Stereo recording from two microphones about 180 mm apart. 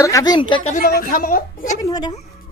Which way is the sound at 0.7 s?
55° left (ahead or behind).